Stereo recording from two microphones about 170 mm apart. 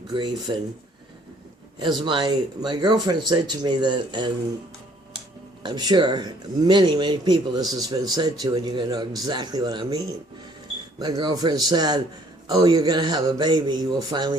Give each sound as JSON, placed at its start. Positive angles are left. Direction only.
{"t": 0.1, "sound": "speech", "side_deg": -25}
{"t": 1.8, "sound": "speech", "side_deg": -25}
{"t": 5.6, "sound": "speech", "side_deg": -25}